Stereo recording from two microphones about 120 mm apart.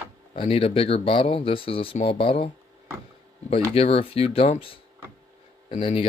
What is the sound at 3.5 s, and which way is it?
Speech, 55° left (ahead or behind).